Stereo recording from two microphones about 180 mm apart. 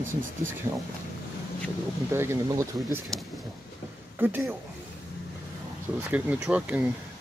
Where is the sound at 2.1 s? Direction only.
15° right (ahead or behind).